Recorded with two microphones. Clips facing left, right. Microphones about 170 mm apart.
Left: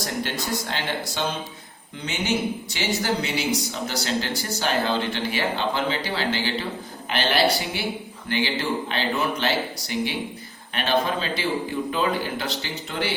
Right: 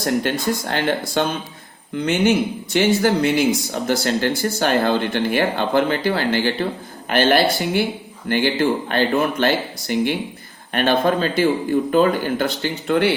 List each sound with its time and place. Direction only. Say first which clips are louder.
0.0 s speech: right 8 dB; 55° right (ahead or behind)